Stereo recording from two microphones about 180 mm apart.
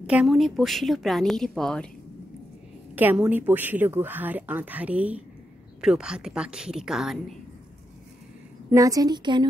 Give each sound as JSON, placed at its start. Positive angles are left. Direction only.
{"t": 0.0, "sound": "a woman's voice", "side_deg": -5}
{"t": 3.0, "sound": "a woman's voice", "side_deg": -10}
{"t": 8.6, "sound": "a woman's voice", "side_deg": -20}